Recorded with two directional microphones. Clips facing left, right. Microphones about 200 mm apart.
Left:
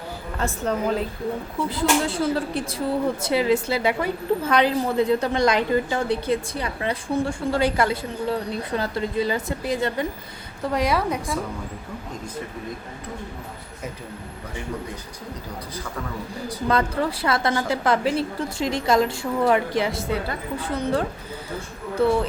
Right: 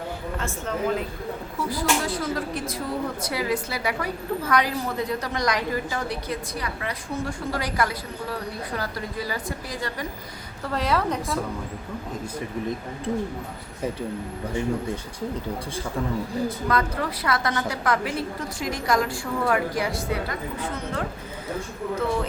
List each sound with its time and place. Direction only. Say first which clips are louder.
0.3 s a woman's voice: left 4 dB; 35° left (ahead or behind)
1.7 s a woman's voice: left 3 dB; 25° left (ahead or behind)
10.7 s a woman's voice: left 2 dB; 15° left (ahead or behind)
16.6 s a woman's voice: left 7 dB; 30° left (ahead or behind)
22.0 s speech: left 7 dB; 30° left (ahead or behind)